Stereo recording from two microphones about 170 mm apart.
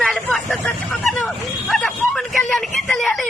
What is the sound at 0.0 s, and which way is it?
Vehicle, 5° left (ahead or behind).